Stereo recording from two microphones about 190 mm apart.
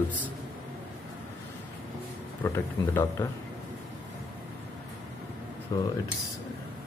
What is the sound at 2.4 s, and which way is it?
Speech, 15° left (ahead or behind).